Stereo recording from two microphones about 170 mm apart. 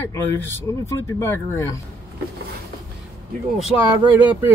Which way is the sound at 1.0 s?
15° left (ahead or behind).